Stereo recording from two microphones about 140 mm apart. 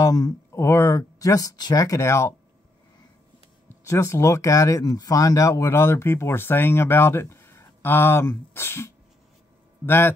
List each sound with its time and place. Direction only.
0.0 s speech: 25° left (ahead or behind)
3.6 s a man's voice: 20° left (ahead or behind)